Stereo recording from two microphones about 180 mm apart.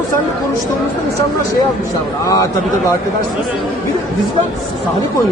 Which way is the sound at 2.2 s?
20° left (ahead or behind).